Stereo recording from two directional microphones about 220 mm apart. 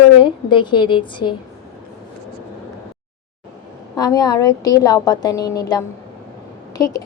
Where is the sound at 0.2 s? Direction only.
20° left (ahead or behind).